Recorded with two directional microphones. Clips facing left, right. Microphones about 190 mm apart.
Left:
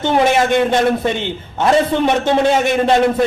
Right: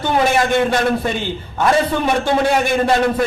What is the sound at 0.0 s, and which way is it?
A man's voice, 20° left (ahead or behind).